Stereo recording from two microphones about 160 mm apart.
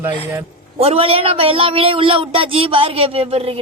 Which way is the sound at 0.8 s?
35° right (ahead or behind).